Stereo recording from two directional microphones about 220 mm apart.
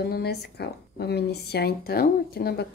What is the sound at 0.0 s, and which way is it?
Speech, 45° left (ahead or behind).